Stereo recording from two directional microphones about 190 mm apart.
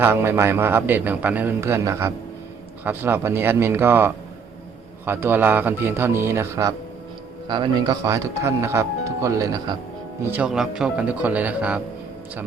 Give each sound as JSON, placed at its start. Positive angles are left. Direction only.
{"t": 0.0, "sound": "speech", "side_deg": -10}
{"t": 10.3, "sound": "speech", "side_deg": -5}